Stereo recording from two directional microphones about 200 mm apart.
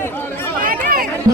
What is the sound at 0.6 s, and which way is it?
Run, 45° right (ahead or behind).